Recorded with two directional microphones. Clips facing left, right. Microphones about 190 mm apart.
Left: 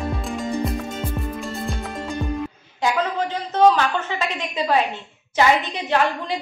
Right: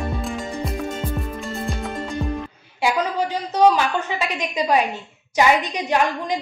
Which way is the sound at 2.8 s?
10° right (ahead or behind).